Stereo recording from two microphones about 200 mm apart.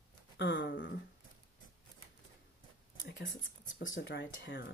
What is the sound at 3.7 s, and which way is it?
Speech, 60° left (ahead or behind).